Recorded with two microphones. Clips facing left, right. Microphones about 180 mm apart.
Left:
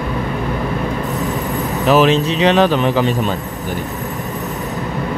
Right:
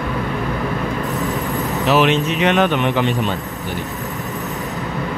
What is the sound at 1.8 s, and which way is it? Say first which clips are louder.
Speech: left 3 dB; 40° left (ahead or behind).